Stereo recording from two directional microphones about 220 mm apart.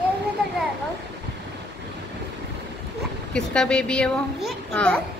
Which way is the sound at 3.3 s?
5° left (ahead or behind).